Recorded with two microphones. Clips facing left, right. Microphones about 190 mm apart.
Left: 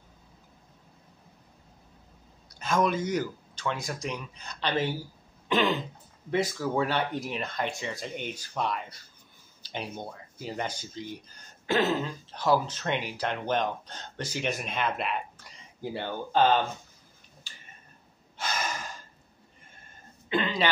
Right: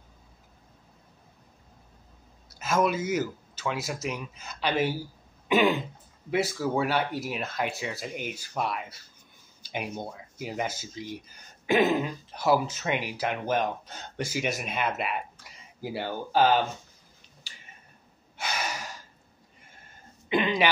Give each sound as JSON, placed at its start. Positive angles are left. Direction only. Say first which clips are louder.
{"t": 2.6, "sound": "speech", "louder": "right 1 dB", "side_deg": -5}
{"t": 18.4, "sound": "gasp", "louder": "even", "side_deg": -10}
{"t": 20.2, "sound": "a sound", "louder": "right 3 dB", "side_deg": -15}